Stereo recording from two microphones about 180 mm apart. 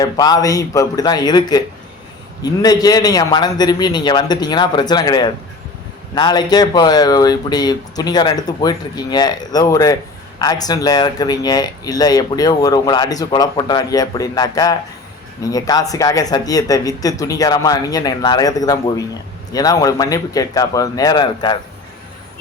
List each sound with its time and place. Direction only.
0.0 s speech: 20° left (ahead or behind)